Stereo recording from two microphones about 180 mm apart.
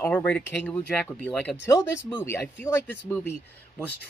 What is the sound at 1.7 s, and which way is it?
Speech, 25° left (ahead or behind).